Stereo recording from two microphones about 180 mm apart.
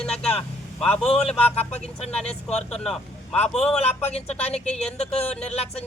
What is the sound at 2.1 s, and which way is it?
Speech, 5° left (ahead or behind).